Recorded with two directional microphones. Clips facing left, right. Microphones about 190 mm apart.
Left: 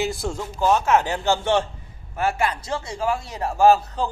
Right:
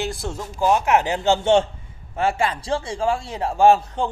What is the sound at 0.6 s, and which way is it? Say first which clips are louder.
A man's voice: right 1 dB; 15° right (ahead or behind).